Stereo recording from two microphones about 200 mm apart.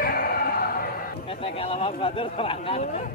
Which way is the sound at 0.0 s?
45° left (ahead or behind).